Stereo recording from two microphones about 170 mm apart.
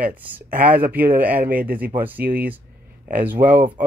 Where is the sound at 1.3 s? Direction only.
60° right (ahead or behind).